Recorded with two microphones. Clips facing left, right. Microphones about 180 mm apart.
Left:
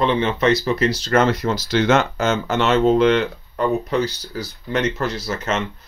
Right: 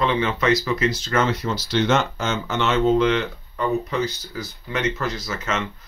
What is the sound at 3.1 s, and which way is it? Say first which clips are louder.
Speech: left 4 dB; 40° left (ahead or behind).